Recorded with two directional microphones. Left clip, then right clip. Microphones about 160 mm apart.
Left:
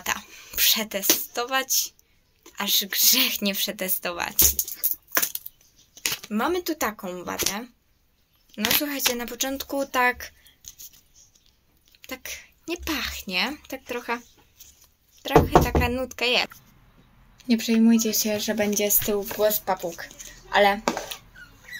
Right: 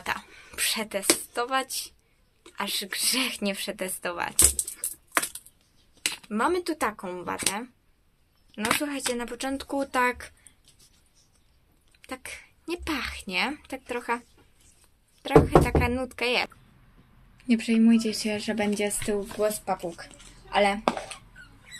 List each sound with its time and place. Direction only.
0.0 s a sound: 10° right (ahead or behind)
2.5 s speech: 5° right (ahead or behind)
6.3 s speech: 5° right (ahead or behind)
12.1 s speech: 5° right (ahead or behind)
15.2 s speech: 10° right (ahead or behind)
17.4 s a sound: 10° right (ahead or behind)
17.9 s speech: 50° left (ahead or behind)
18.5 s speech: 5° right (ahead or behind)
20.0 s a sound: 10° right (ahead or behind)